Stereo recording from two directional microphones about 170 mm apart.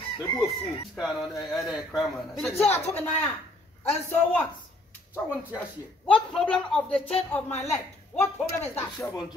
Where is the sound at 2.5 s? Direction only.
40° left (ahead or behind).